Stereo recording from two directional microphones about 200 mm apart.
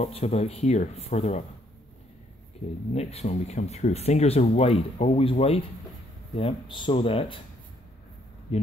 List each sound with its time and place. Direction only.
0.0 s speech: 30° left (ahead or behind)
2.9 s speech: 30° left (ahead or behind)
8.5 s speech: 35° left (ahead or behind)